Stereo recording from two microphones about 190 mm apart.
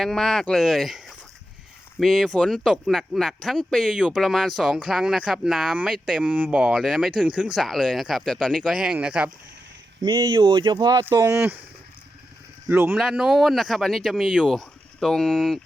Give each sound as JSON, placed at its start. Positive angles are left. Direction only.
{"t": 0.0, "sound": "speech", "side_deg": 0}
{"t": 10.0, "sound": "speech", "side_deg": -25}
{"t": 12.6, "sound": "speech", "side_deg": -10}